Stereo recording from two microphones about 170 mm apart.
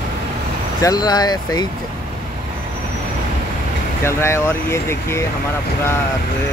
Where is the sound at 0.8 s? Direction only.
20° left (ahead or behind).